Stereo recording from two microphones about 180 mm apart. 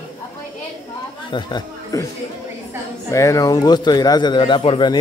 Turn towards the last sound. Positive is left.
turn(degrees=25)  # may be behind; listen again after turning